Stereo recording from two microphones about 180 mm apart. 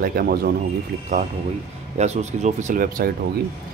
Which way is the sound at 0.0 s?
55° right (ahead or behind).